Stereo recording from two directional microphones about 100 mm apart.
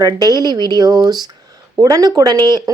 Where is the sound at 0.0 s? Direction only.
40° right (ahead or behind).